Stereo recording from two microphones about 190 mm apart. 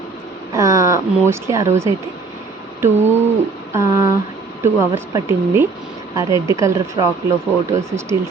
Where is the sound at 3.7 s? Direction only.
15° right (ahead or behind).